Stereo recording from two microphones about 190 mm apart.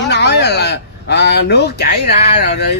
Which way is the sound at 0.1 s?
60° left (ahead or behind).